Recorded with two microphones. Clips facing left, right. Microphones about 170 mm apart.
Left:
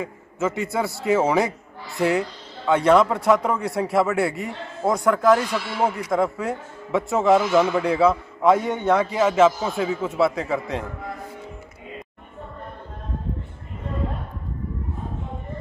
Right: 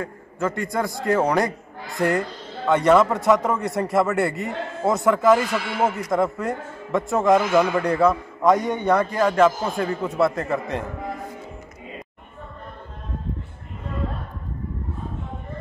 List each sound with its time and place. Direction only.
0.0 s a man's voice: 5° left (ahead or behind)